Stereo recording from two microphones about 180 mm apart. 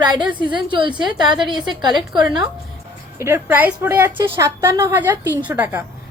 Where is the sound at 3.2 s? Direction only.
15° right (ahead or behind).